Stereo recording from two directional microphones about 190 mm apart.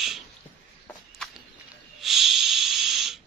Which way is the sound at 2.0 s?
Centre (ahead or behind).